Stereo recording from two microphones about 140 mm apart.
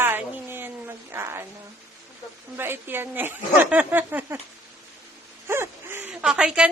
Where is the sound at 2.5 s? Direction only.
15° right (ahead or behind).